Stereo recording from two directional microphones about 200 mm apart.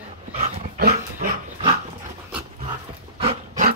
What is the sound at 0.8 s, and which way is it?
Dog, 50° right (ahead or behind).